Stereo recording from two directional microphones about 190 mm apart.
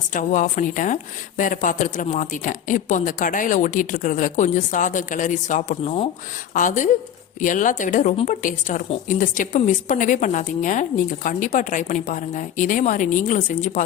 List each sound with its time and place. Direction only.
0.1 s a woman's voice: 40° left (ahead or behind)